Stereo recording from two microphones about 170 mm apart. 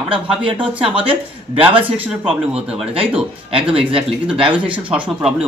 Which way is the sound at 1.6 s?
30° right (ahead or behind).